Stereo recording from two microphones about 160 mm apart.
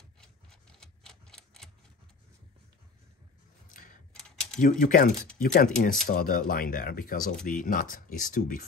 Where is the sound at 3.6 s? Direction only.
55° left (ahead or behind).